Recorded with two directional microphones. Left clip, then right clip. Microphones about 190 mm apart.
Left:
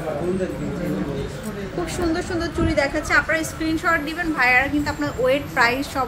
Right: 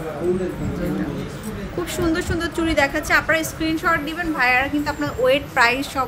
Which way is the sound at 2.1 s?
35° right (ahead or behind).